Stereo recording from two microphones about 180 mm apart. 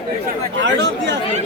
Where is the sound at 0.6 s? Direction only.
75° right (ahead or behind).